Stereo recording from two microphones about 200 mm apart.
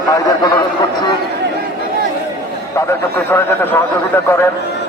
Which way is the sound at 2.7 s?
10° left (ahead or behind).